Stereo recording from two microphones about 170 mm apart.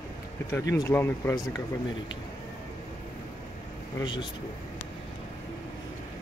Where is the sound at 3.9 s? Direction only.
25° left (ahead or behind).